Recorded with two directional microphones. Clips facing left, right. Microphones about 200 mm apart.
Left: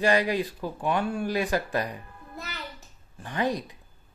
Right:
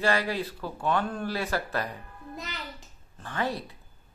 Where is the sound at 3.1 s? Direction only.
10° left (ahead or behind).